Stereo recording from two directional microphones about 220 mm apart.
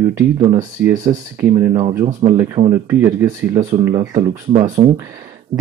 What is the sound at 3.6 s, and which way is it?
Speech, 30° right (ahead or behind).